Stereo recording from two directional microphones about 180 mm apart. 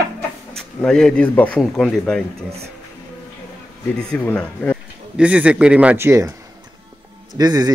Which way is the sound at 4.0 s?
5° left (ahead or behind).